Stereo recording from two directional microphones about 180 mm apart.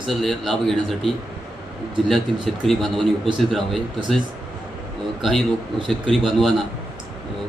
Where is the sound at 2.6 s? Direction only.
Centre (ahead or behind).